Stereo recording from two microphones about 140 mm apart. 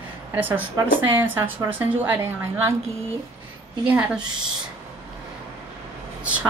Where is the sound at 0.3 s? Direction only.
10° right (ahead or behind).